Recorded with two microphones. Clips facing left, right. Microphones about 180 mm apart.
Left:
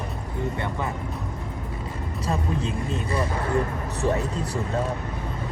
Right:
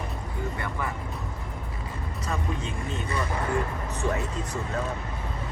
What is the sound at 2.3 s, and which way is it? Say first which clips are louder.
Speech: left 5 dB; 35° left (ahead or behind).